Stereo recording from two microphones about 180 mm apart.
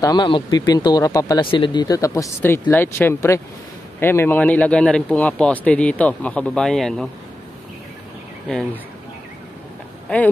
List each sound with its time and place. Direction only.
0.0 s speech: 25° left (ahead or behind); by 7.1 s centre (ahead or behind)